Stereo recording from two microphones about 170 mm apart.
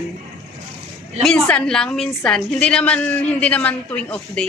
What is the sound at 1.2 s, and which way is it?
A woman's voice, 5° left (ahead or behind).